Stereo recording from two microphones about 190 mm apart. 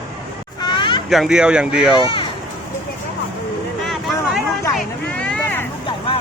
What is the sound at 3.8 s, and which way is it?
Vehicle, centre (ahead or behind).